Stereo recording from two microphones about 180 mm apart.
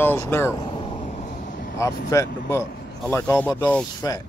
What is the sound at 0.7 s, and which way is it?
Vehicle, 30° left (ahead or behind).